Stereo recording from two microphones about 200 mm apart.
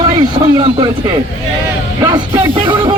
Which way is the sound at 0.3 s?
20° right (ahead or behind).